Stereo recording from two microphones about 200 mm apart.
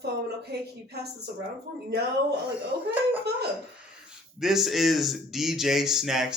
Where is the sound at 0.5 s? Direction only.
55° right (ahead or behind).